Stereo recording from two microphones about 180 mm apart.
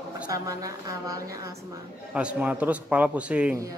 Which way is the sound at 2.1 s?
5° right (ahead or behind).